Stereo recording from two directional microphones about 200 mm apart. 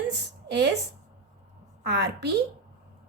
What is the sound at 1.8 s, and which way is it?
Speech, 60° right (ahead or behind).